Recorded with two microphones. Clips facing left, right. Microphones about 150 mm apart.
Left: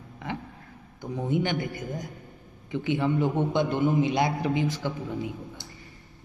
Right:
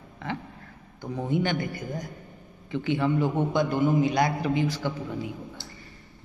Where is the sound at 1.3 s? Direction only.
20° left (ahead or behind).